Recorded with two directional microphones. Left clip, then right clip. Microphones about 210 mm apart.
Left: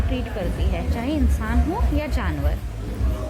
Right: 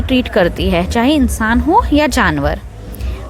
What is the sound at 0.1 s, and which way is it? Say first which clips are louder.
A woman's voice: right 17 dB; 45° right (ahead or behind).